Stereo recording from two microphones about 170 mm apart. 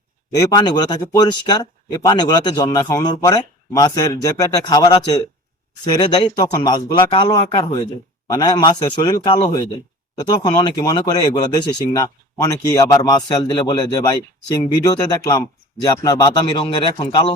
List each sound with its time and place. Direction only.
0.3 s speech: 25° left (ahead or behind)